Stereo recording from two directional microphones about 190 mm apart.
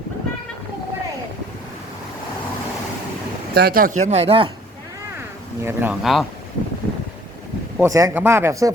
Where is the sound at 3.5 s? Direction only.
50° right (ahead or behind); by 4.5 s 30° right (ahead or behind).